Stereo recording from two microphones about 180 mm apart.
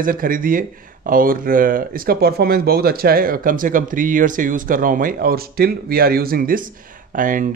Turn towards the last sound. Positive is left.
turn(degrees=-50)  # may be behind; listen again after turning